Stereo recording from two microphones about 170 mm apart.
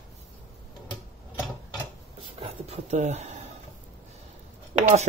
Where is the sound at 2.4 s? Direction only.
40° right (ahead or behind).